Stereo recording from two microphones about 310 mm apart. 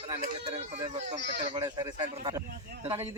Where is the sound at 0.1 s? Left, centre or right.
Centre.